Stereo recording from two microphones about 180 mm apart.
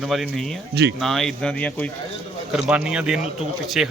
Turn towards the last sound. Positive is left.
turn(degrees=-5)  # may be behind; listen again after turning